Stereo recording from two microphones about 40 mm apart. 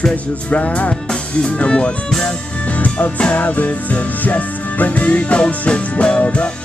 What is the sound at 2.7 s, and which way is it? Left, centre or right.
Music, left.